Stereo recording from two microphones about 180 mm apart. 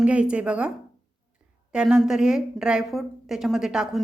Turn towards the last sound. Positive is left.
turn(degrees=0)  # may be behind; listen again after turning